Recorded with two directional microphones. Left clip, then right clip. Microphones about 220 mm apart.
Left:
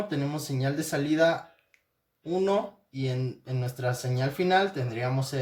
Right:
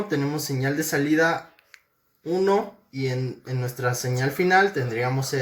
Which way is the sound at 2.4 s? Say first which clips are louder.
Right 5 dB; 15° left (ahead or behind).